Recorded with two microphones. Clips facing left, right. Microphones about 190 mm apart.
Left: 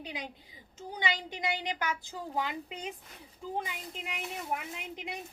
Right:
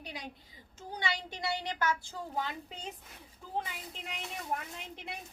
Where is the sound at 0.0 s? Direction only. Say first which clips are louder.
Left 3 dB; 20° left (ahead or behind).